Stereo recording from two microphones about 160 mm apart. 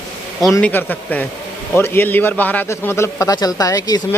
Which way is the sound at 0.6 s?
10° left (ahead or behind).